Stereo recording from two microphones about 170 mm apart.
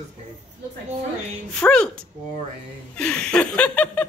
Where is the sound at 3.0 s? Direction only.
5° left (ahead or behind).